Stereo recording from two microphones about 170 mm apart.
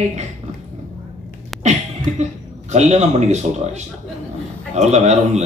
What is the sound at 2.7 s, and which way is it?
Speech, 40° right (ahead or behind).